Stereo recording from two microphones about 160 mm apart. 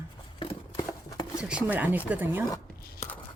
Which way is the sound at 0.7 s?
20° left (ahead or behind).